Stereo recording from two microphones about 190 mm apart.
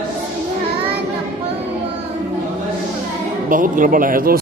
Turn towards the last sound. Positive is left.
turn(degrees=-50)  # may be behind; listen again after turning